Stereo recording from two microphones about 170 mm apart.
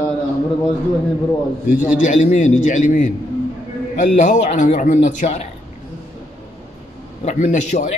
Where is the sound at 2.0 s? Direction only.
45° left (ahead or behind).